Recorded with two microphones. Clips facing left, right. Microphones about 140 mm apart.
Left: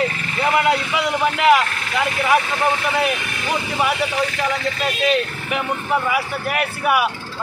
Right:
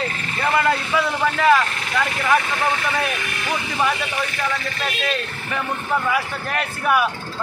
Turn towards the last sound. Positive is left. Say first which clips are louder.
# left 1 dB
turn(degrees=10)  # may be behind; listen again after turning